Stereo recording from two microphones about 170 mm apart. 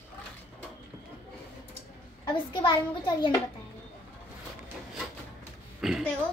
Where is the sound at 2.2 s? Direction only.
30° left (ahead or behind).